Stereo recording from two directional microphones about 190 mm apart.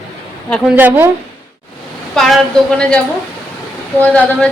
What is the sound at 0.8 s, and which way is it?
Speech, 10° right (ahead or behind).